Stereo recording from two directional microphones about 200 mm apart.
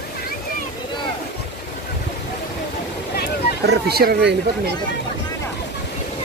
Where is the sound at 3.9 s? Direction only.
50° right (ahead or behind).